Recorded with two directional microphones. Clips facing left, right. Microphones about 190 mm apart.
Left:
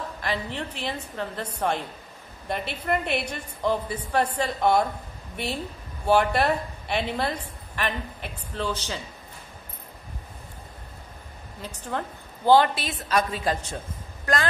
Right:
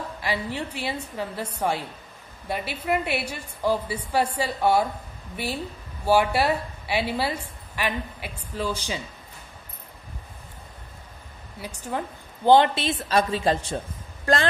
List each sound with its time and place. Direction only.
0.2 s a woman's voice: 10° right (ahead or behind)
11.6 s a woman's voice: 10° right (ahead or behind)
12.4 s a woman's voice: 20° right (ahead or behind)